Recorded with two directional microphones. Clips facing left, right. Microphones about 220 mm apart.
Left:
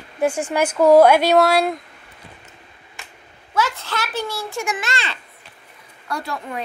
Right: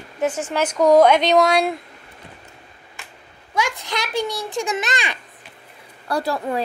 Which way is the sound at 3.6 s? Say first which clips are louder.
Left 1 dB; 15° right (ahead or behind).